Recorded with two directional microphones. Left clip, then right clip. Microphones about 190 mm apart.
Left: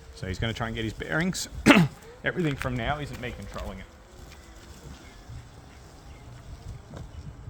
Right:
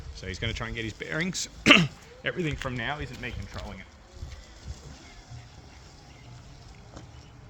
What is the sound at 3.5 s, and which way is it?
Speech, 40° left (ahead or behind).